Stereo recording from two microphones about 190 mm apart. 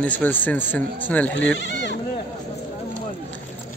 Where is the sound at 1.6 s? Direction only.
75° left (ahead or behind).